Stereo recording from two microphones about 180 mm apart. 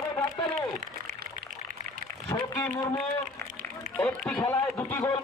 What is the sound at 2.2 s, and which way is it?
Speech, 20° left (ahead or behind).